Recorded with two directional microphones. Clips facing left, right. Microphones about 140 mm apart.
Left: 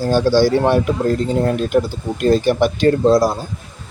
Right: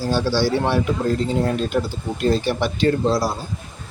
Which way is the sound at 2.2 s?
50° left (ahead or behind).